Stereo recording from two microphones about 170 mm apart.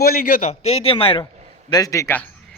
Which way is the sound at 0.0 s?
60° left (ahead or behind).